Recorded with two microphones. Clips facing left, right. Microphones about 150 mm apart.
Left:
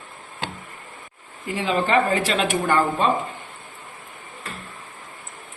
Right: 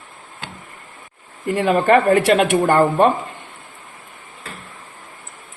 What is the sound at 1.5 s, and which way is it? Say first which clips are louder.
Speech: right 7 dB; 55° right (ahead or behind).